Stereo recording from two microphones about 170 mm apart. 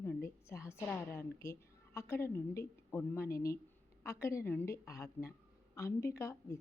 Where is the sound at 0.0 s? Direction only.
15° left (ahead or behind).